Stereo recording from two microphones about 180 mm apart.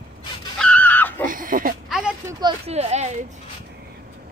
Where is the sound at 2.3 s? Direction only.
25° right (ahead or behind).